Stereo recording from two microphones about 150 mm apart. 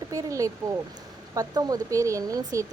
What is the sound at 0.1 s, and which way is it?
Speech, 20° right (ahead or behind).